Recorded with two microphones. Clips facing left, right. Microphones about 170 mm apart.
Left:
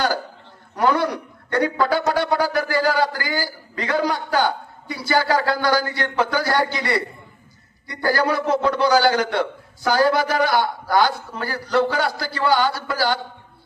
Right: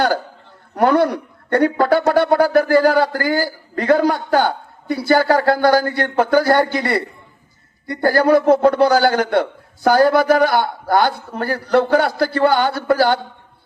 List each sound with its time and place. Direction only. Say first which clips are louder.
0.8 s speech: right 5 dB; 55° right (ahead or behind)